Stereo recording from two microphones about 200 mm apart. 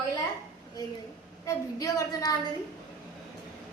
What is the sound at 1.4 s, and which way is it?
Speech, 15° left (ahead or behind).